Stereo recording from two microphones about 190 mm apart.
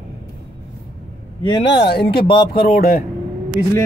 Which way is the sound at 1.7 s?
60° left (ahead or behind).